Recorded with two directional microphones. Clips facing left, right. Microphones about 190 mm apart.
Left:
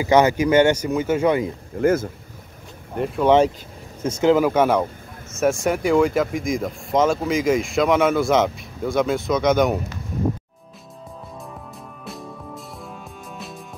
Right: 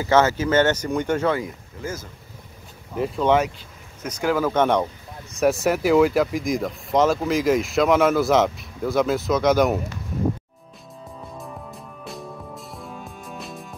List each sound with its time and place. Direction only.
0.0 s speech: 15° left (ahead or behind)
1.8 s speech: 60° left (ahead or behind)
3.3 s speech: 10° left (ahead or behind)
4.0 s speech: 25° left (ahead or behind)
4.5 s speech: 5° left (ahead or behind)
12.0 s music: centre (ahead or behind)